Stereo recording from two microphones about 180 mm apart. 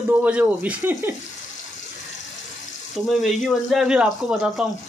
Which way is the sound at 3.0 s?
Centre (ahead or behind).